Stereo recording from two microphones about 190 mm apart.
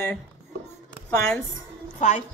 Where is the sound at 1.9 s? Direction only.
40° left (ahead or behind).